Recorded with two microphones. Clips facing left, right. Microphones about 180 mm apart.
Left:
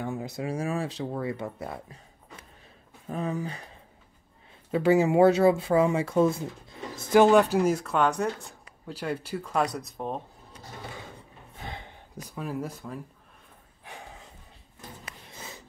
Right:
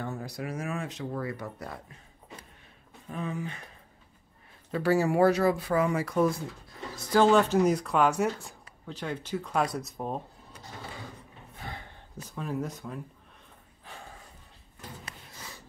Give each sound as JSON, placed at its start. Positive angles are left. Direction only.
{"t": 0.0, "sound": "speech", "side_deg": 20}
{"t": 3.1, "sound": "speech", "side_deg": 40}
{"t": 4.6, "sound": "speech", "side_deg": 20}
{"t": 11.6, "sound": "gasp", "side_deg": 20}
{"t": 15.3, "sound": "snort", "side_deg": 25}